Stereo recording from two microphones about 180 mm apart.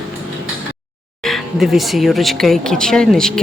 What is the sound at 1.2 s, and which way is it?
Speech, centre (ahead or behind).